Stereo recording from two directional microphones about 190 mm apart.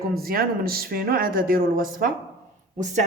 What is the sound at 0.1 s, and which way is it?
Speech, 50° right (ahead or behind).